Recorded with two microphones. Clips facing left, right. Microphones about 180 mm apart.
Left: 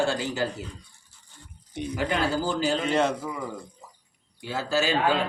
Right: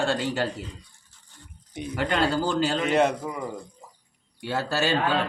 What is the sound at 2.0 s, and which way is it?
Speech, 65° right (ahead or behind).